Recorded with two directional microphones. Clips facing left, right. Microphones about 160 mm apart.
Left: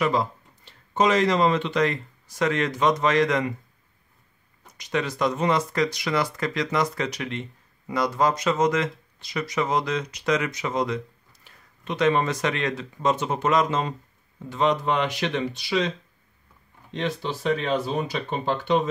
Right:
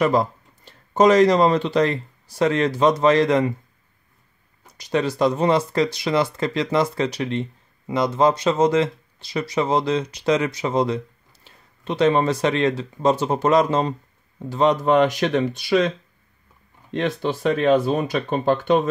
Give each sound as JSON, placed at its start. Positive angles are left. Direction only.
{"t": 0.0, "sound": "speech", "side_deg": -45}
{"t": 4.7, "sound": "speech", "side_deg": -35}
{"t": 16.9, "sound": "speech", "side_deg": -55}